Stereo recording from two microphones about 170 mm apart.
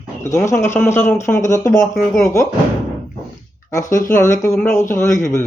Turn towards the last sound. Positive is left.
turn(degrees=20)  # may be behind; listen again after turning